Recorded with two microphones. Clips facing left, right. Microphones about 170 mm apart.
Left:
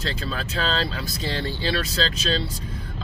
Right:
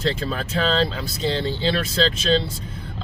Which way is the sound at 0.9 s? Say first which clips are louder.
Right 4 dB; 20° right (ahead or behind).